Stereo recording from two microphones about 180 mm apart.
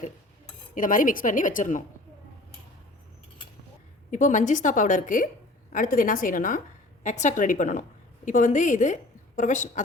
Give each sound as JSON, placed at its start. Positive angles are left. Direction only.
{"t": 0.7, "sound": "a woman's voice", "side_deg": 50}
{"t": 4.1, "sound": "a woman's voice", "side_deg": 45}